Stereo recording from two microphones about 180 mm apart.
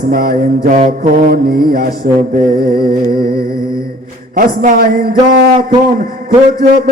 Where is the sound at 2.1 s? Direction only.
55° right (ahead or behind).